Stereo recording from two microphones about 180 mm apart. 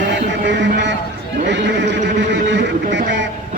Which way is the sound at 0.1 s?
75° right (ahead or behind).